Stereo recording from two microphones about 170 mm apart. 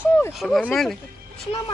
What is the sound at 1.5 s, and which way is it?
Speech, 30° left (ahead or behind).